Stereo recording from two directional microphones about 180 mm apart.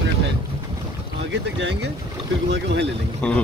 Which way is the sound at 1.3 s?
75° right (ahead or behind).